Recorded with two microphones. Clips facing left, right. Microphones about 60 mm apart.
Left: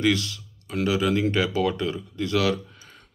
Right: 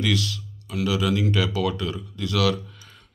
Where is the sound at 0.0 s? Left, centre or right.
Left.